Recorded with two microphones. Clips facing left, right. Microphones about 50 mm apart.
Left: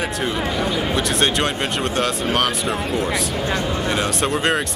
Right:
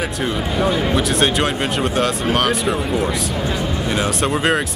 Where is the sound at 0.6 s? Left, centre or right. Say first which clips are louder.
Right 7 dB; centre.